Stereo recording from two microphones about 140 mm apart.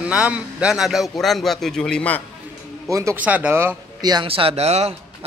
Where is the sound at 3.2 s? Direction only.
10° right (ahead or behind).